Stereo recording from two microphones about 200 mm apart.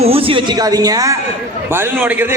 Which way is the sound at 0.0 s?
30° right (ahead or behind).